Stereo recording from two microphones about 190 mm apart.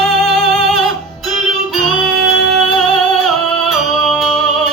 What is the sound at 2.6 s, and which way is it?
Music, centre (ahead or behind).